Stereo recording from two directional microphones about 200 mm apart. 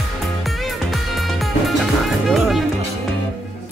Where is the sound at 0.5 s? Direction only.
Centre (ahead or behind).